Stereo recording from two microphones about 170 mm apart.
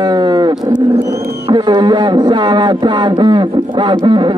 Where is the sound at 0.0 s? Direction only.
25° right (ahead or behind).